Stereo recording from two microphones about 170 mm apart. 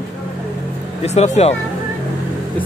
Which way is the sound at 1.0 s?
40° left (ahead or behind).